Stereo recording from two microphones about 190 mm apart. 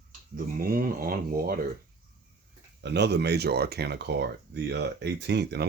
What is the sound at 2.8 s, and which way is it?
Speech, 65° right (ahead or behind).